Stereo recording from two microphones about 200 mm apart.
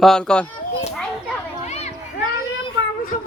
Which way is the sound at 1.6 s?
35° left (ahead or behind).